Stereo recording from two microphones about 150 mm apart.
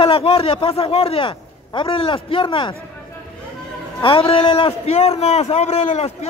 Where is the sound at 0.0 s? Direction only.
40° left (ahead or behind).